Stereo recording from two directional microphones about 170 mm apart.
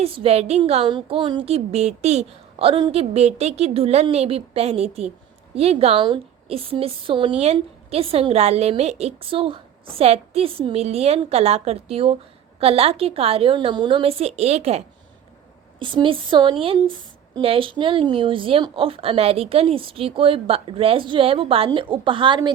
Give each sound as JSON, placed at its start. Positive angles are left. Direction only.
{"t": 0.0, "sound": "speech", "side_deg": -35}